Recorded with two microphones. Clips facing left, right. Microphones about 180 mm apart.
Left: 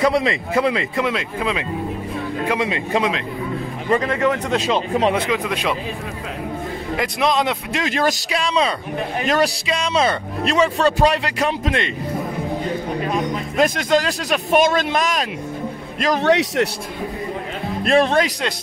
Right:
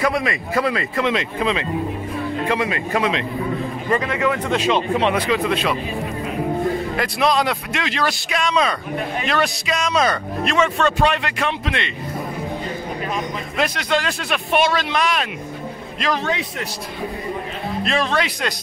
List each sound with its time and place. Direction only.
0.0 s a man's voice: 25° left (ahead or behind)
1.0 s speech: 5° left (ahead or behind)
2.4 s a man's voice: 15° left (ahead or behind)
4.0 s speech: 40° left (ahead or behind)
5.1 s a man's voice: 25° left (ahead or behind)
5.4 s speech: 15° left (ahead or behind)
7.0 s a man's voice: 20° left (ahead or behind)
7.8 s a man's voice: 45° left (ahead or behind)
8.3 s speech: 30° left (ahead or behind)
9.2 s speech: 40° left (ahead or behind)
9.7 s speech: 30° left (ahead or behind)
13.6 s a man's voice: 40° left (ahead or behind)
16.2 s a man's voice: 75° left (ahead or behind)
17.8 s a man's voice: 50° left (ahead or behind)